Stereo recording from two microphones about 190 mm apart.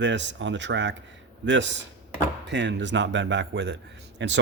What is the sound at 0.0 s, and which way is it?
Speech, 70° right (ahead or behind).